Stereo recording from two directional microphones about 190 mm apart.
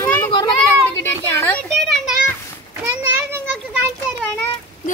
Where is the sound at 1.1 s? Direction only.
10° left (ahead or behind).